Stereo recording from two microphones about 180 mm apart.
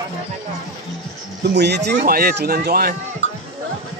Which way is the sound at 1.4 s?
70° right (ahead or behind).